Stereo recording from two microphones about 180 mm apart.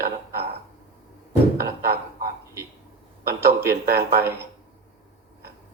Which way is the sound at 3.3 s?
15° right (ahead or behind).